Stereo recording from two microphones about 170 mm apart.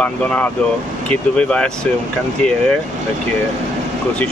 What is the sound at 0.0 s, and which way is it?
Speech, 10° left (ahead or behind).